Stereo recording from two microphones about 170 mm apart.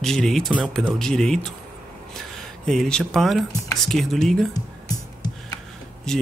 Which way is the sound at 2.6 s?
5° left (ahead or behind).